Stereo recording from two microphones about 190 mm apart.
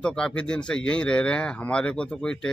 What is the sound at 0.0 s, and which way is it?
A man's voice, 5° left (ahead or behind).